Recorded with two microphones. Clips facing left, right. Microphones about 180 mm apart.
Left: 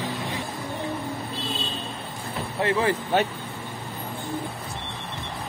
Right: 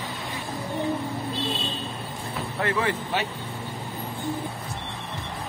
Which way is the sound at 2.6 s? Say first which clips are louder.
Left 3 dB; 30° left (ahead or behind).